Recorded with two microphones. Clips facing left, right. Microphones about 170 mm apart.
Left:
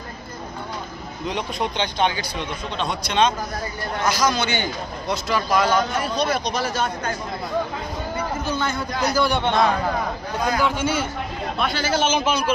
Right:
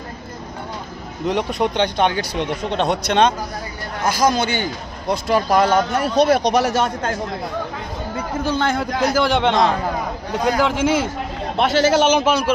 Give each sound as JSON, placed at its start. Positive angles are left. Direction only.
{"t": 1.2, "sound": "a man's voice", "side_deg": -65}
{"t": 4.0, "sound": "a man's voice", "side_deg": -50}
{"t": 8.5, "sound": "a man's voice", "side_deg": -90}